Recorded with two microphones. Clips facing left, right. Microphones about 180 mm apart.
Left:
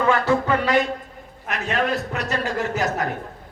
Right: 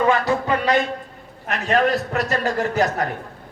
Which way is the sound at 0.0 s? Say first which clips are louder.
Even; 20° right (ahead or behind).